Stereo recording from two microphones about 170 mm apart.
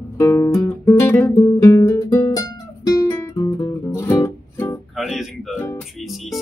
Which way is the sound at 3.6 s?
15° left (ahead or behind).